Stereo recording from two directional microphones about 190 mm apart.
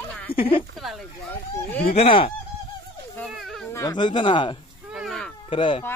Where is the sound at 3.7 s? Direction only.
20° left (ahead or behind).